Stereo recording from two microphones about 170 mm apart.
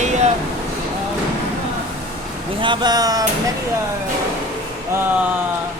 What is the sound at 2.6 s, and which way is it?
Speech, 25° right (ahead or behind).